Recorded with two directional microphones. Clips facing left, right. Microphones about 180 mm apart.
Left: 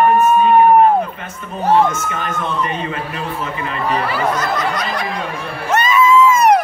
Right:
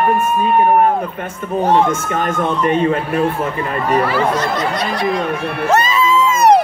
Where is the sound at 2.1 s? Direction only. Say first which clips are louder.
Right 5 dB; 50° right (ahead or behind).